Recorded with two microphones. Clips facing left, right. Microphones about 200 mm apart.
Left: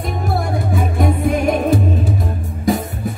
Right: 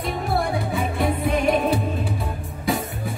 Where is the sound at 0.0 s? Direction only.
45° left (ahead or behind).